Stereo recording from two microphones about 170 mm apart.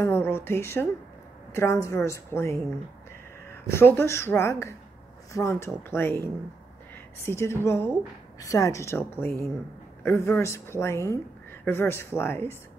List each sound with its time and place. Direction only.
0.0 s a woman's voice: 15° left (ahead or behind)
7.2 s speech: 15° left (ahead or behind)